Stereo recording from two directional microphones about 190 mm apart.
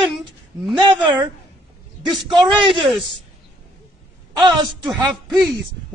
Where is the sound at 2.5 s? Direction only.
25° right (ahead or behind).